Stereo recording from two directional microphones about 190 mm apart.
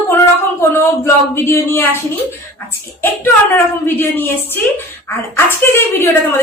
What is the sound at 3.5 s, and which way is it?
Speech, 10° left (ahead or behind).